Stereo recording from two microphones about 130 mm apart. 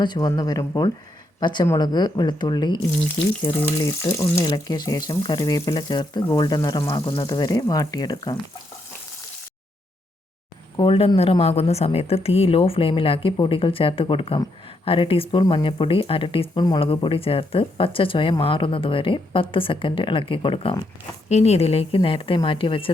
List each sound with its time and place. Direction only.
0.0 s speech: 30° left (ahead or behind)
3.8 s speech: 25° left (ahead or behind)
10.8 s speech: 45° left (ahead or behind)
21.2 s speech: 55° left (ahead or behind); by 22.9 s 40° left (ahead or behind)